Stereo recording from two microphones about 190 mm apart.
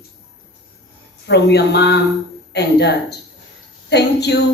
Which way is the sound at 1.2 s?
65° left (ahead or behind).